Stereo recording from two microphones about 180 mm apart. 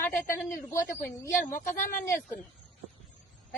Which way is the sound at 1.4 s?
50° left (ahead or behind).